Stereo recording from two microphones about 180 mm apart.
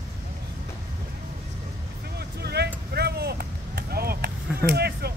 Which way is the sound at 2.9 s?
60° right (ahead or behind).